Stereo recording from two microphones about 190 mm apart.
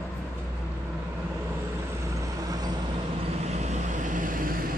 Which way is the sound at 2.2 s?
20° right (ahead or behind).